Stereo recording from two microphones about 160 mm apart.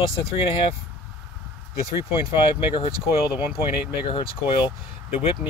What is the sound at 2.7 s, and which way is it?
Speech, 35° left (ahead or behind).